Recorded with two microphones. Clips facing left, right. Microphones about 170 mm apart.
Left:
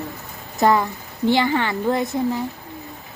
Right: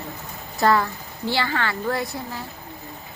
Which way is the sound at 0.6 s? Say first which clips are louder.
Left 2 dB; 20° left (ahead or behind).